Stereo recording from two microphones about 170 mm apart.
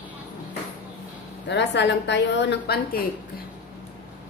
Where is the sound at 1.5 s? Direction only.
90° left.